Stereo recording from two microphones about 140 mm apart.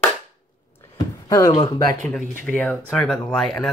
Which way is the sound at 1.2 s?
25° left (ahead or behind).